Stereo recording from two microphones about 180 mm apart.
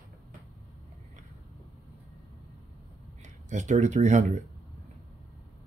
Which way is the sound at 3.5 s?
45° right (ahead or behind).